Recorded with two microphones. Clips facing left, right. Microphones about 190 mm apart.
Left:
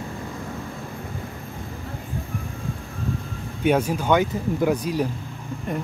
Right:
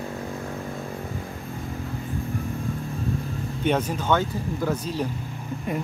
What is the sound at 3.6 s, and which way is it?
Speech, 10° left (ahead or behind).